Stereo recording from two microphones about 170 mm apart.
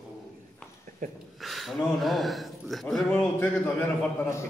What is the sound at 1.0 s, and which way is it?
Speech, 50° right (ahead or behind).